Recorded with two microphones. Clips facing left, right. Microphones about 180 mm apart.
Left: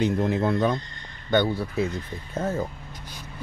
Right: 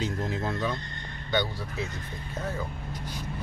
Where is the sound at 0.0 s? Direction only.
60° left (ahead or behind).